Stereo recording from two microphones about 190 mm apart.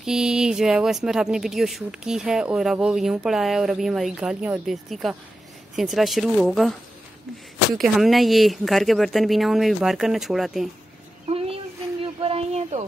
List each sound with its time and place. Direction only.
0.0 s speech: 5° right (ahead or behind)
7.7 s speech: centre (ahead or behind)
11.2 s a sound: 30° right (ahead or behind)